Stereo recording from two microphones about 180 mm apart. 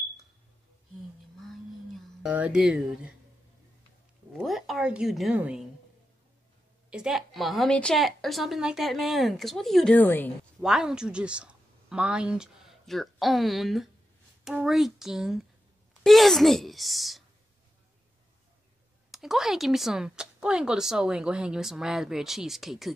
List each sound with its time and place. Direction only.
1.4 s a sound: centre (ahead or behind)
4.4 s speech: centre (ahead or behind)
6.9 s speech: 5° right (ahead or behind)
10.6 s speech: 5° right (ahead or behind)
19.0 s speech: centre (ahead or behind)